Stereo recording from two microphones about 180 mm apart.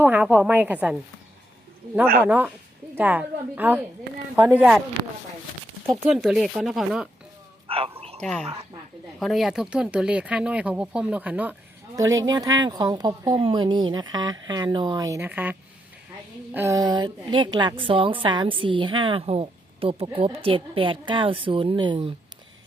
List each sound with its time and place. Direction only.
0.0 s a woman's voice: 10° right (ahead or behind)
2.2 s speech: 10° right (ahead or behind)
5.9 s speech: centre (ahead or behind)
7.7 s a sound: 30° right (ahead or behind)
8.2 s a woman's voice: 5° left (ahead or behind); by 22.1 s 30° right (ahead or behind)